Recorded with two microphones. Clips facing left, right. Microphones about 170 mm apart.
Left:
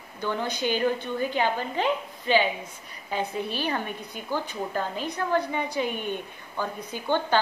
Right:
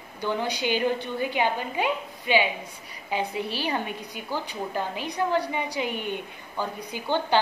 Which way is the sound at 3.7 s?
15° right (ahead or behind).